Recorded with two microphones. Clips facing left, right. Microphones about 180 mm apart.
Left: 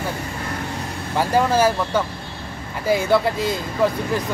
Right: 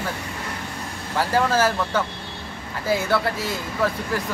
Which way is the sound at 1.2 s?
15° left (ahead or behind).